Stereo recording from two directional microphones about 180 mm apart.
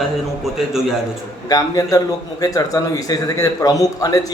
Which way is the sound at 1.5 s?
20° left (ahead or behind).